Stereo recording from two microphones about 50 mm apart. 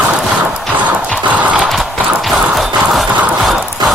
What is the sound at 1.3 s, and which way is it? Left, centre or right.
Clip-clop, right.